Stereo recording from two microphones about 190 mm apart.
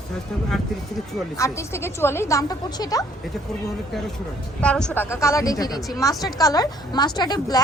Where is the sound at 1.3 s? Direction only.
15° left (ahead or behind).